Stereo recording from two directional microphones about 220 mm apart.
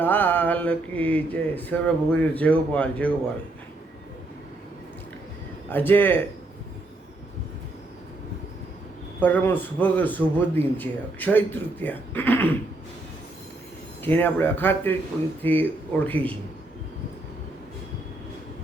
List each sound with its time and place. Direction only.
0.0 s a man's voice: 10° left (ahead or behind)
5.6 s a man's voice: 10° left (ahead or behind)
9.2 s a man's voice: 10° left (ahead or behind)
14.0 s a man's voice: 10° left (ahead or behind)